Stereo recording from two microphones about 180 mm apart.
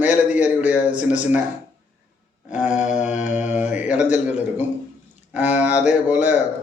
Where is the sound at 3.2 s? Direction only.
40° left (ahead or behind).